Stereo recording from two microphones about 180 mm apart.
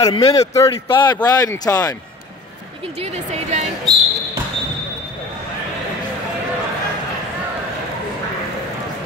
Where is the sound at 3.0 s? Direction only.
40° right (ahead or behind).